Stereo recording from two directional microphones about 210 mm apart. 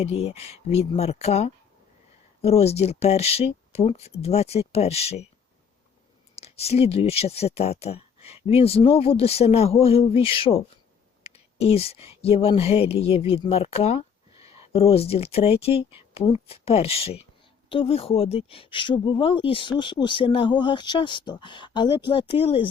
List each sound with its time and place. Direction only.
0.0 s speech: 30° left (ahead or behind)
6.3 s speech: 30° left (ahead or behind)